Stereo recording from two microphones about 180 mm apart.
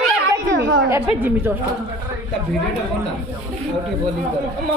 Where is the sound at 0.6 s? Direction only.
90° right.